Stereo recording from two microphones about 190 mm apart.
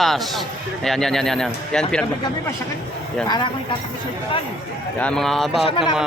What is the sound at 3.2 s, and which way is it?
Speech, 25° left (ahead or behind).